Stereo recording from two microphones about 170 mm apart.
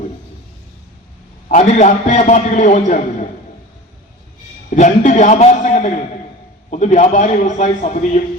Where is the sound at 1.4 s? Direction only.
45° left (ahead or behind).